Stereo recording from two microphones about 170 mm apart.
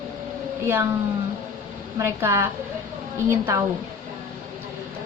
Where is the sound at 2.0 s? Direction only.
15° right (ahead or behind).